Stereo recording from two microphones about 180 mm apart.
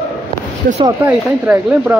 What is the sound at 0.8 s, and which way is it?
Speech, 10° right (ahead or behind).